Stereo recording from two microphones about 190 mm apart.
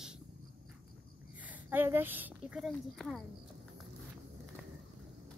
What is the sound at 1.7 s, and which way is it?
A woman's voice, 10° right (ahead or behind).